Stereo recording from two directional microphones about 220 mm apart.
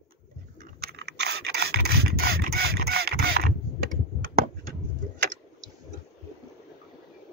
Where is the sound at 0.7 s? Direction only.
45° right (ahead or behind).